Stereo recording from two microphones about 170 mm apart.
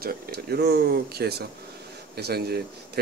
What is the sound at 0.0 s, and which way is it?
A man's voice, 65° right (ahead or behind).